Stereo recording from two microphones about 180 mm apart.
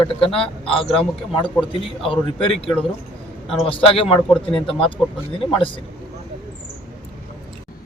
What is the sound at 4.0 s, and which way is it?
Speech, 30° left (ahead or behind).